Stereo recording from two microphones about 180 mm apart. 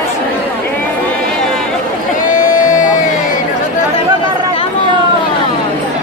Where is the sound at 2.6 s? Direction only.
45° left (ahead or behind).